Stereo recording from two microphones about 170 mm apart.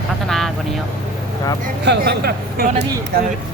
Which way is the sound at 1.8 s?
70° right (ahead or behind).